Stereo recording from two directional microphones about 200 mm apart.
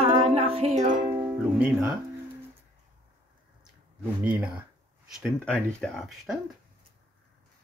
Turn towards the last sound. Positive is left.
turn(degrees=0)  # may be behind; listen again after turning